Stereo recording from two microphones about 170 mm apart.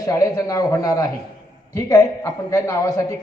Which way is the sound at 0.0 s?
20° left (ahead or behind).